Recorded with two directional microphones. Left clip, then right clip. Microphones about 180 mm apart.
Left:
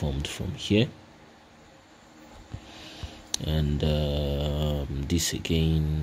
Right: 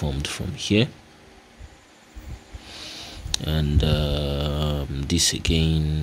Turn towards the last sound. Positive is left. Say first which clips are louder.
# right 4 dB
turn(degrees=-10)  # may be behind; listen again after turning